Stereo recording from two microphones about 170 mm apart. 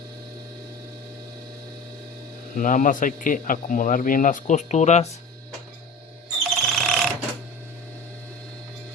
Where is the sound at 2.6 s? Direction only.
50° left (ahead or behind).